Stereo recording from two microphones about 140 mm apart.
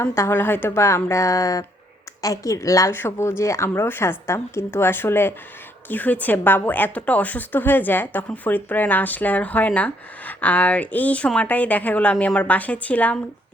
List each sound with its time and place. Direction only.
0.0 s a woman's voice: 20° left (ahead or behind)